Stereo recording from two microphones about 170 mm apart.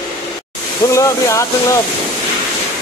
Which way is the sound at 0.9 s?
20° left (ahead or behind).